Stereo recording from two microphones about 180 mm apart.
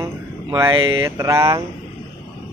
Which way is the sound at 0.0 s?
20° right (ahead or behind).